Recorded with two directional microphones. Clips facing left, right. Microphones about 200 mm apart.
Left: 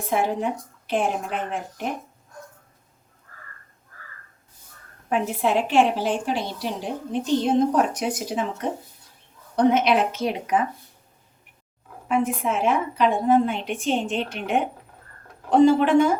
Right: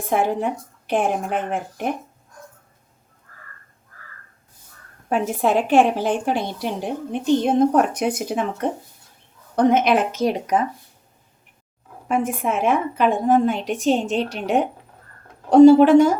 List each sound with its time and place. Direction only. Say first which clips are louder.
0.9 s speech: right 3 dB; 55° right (ahead or behind)
5.0 s a woman's voice: right 3 dB; 45° right (ahead or behind)
12.0 s a woman's voice: right 1 dB; 50° right (ahead or behind)